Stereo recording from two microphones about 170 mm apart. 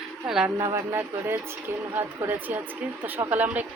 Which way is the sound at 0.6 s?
20° right (ahead or behind).